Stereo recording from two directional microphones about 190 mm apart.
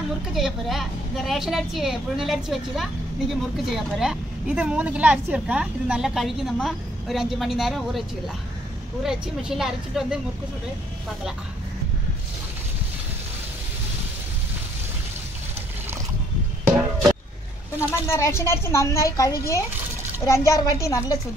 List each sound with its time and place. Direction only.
0.3 s a woman's voice: centre (ahead or behind)
9.0 s a woman's voice: 5° right (ahead or behind)
17.9 s speech: 15° left (ahead or behind)